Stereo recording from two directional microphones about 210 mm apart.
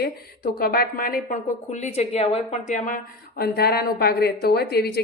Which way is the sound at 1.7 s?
35° left (ahead or behind).